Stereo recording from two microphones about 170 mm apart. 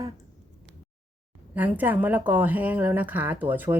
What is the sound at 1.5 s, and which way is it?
Speech, 10° right (ahead or behind).